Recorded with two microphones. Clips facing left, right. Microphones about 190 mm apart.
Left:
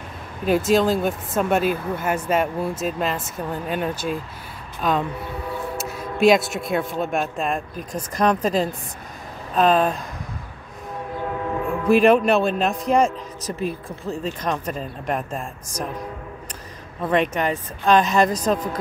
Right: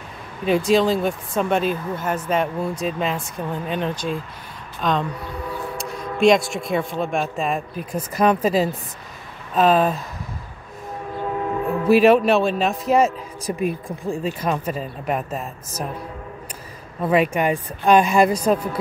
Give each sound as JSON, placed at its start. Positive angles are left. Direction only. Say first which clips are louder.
{"t": 0.5, "sound": "speech", "louder": "right 1 dB", "side_deg": 0}
{"t": 11.9, "sound": "speech", "louder": "right 1 dB", "side_deg": -5}
{"t": 17.0, "sound": "speech", "louder": "right 2 dB", "side_deg": -5}